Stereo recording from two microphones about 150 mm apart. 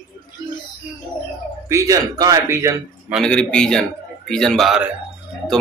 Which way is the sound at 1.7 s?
20° right (ahead or behind).